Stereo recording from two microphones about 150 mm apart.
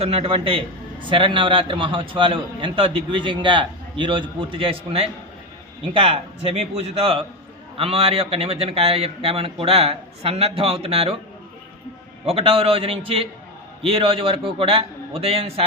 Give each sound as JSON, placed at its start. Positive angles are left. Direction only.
{"t": 0.0, "sound": "a man's voice", "side_deg": -40}
{"t": 12.2, "sound": "a man's voice", "side_deg": -40}